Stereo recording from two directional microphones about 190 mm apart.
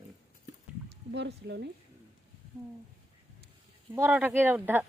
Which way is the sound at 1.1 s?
65° right (ahead or behind).